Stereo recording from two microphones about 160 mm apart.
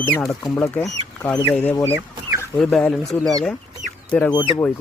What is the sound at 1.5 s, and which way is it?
Speech, 10° left (ahead or behind).